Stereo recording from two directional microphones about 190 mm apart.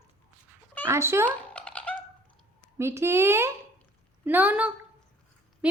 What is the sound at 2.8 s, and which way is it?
Speech, 15° right (ahead or behind).